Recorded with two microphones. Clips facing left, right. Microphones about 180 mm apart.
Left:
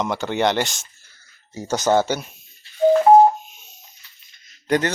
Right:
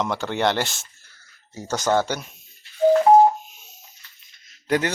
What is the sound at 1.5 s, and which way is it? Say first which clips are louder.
Speech: left 3 dB; 10° left (ahead or behind).